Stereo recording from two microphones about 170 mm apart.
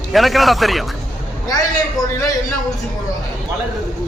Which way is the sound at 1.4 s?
25° left (ahead or behind).